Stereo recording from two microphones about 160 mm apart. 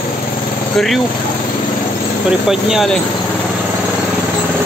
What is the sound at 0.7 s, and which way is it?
Speech, centre (ahead or behind).